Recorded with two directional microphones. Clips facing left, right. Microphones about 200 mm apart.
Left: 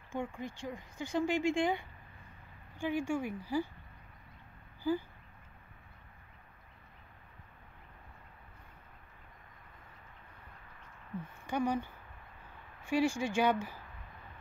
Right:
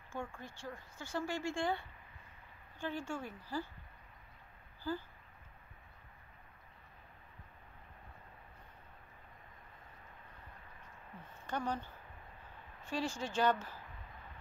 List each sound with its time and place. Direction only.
0.1 s speech: 15° left (ahead or behind)
4.9 s speech: 15° left (ahead or behind)
11.4 s speech: 10° left (ahead or behind)